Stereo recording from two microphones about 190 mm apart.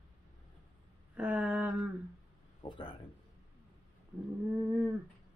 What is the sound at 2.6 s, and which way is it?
Speech, 30° left (ahead or behind).